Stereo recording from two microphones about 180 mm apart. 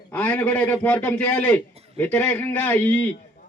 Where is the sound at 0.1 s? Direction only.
10° left (ahead or behind).